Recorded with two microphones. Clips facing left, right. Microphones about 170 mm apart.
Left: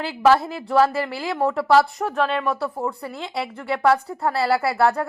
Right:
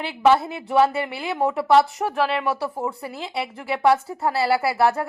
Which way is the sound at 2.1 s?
5° right (ahead or behind).